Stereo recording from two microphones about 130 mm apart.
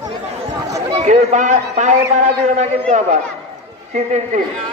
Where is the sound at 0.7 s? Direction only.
30° right (ahead or behind).